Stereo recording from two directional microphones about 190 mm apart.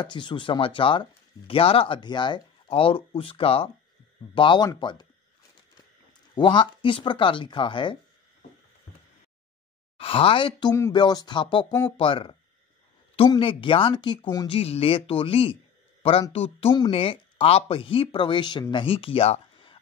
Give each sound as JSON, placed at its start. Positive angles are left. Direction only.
{"t": 0.0, "sound": "speech", "side_deg": 25}
{"t": 6.3, "sound": "speech", "side_deg": 25}
{"t": 9.9, "sound": "speech", "side_deg": 30}